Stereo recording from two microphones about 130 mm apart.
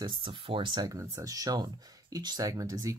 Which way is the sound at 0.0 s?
40° right (ahead or behind).